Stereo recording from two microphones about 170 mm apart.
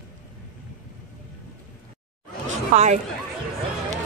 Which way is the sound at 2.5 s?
45° right (ahead or behind).